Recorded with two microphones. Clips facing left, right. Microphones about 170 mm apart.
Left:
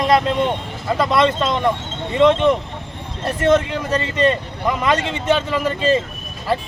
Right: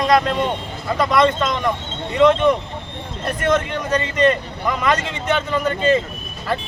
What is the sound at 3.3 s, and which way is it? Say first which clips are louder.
Speech: left 3 dB; 30° left (ahead or behind).